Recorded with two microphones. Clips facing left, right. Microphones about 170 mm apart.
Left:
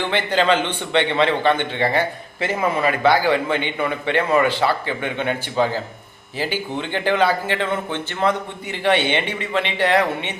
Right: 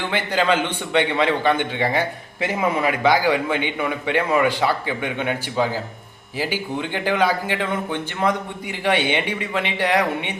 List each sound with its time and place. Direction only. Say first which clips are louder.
0.1 s a man's voice: left 1 dB; 10° right (ahead or behind)